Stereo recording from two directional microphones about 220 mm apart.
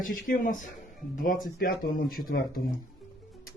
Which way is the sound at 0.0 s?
40° left (ahead or behind).